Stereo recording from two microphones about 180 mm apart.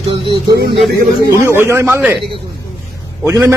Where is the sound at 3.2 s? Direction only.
15° right (ahead or behind).